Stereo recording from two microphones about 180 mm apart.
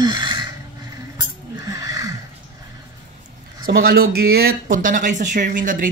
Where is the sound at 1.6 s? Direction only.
20° right (ahead or behind).